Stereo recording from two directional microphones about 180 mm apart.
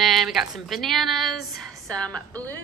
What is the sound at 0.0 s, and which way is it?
Speech, centre (ahead or behind).